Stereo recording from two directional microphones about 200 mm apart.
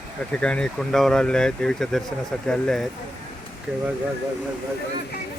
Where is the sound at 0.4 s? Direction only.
5° left (ahead or behind).